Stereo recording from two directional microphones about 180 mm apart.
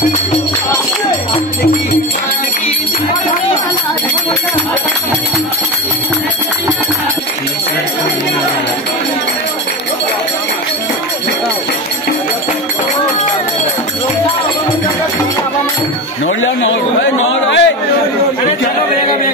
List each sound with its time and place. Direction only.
16.6 s chatter: 90° left